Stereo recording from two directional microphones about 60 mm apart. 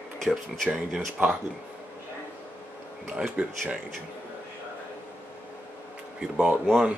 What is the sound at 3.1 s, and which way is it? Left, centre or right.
Speech, centre.